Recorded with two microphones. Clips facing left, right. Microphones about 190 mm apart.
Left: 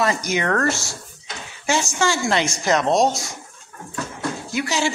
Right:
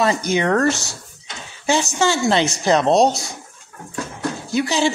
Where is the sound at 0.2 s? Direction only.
30° right (ahead or behind).